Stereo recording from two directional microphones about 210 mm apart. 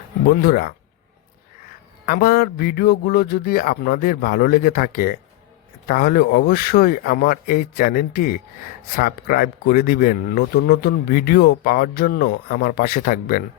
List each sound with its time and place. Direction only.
0.3 s speech: 45° left (ahead or behind)
2.0 s speech: 45° left (ahead or behind)